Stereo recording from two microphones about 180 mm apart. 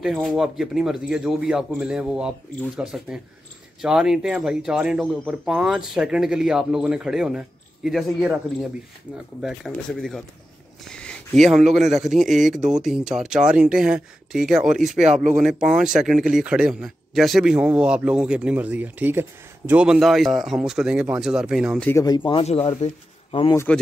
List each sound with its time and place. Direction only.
0.0 s speech: centre (ahead or behind)
9.4 s speech: centre (ahead or behind)
10.8 s a sound: 5° left (ahead or behind)
11.7 s speech: centre (ahead or behind)
21.8 s speech: 20° left (ahead or behind)